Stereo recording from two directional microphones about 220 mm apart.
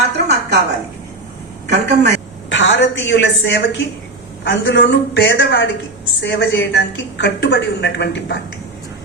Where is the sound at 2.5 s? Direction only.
55° left (ahead or behind).